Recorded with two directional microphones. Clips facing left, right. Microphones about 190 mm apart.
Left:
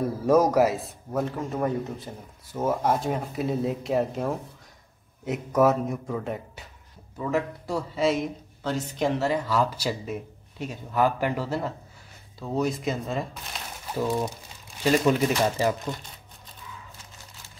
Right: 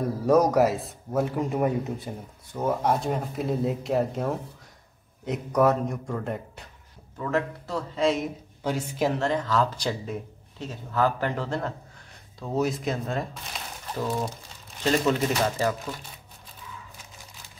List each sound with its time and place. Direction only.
0.0 s speech: centre (ahead or behind)
7.2 s speech: 10° left (ahead or behind)
8.6 s speech: 10° right (ahead or behind); by 15.7 s 15° left (ahead or behind)